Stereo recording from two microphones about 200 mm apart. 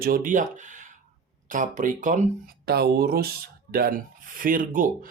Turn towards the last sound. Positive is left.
turn(degrees=-45)  # may be behind; listen again after turning